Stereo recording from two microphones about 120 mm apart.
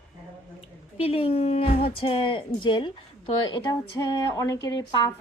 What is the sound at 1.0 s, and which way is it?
Speech, 55° left (ahead or behind).